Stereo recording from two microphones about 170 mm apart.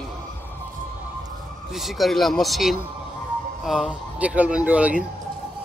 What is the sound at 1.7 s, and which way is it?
Speech, centre (ahead or behind).